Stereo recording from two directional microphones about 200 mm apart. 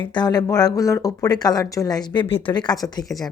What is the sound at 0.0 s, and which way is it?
A woman's voice, 20° left (ahead or behind).